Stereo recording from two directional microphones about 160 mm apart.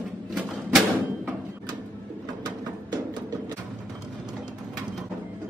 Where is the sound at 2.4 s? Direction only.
25° right (ahead or behind).